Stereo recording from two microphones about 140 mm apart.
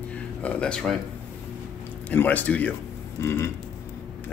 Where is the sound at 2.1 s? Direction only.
10° left (ahead or behind).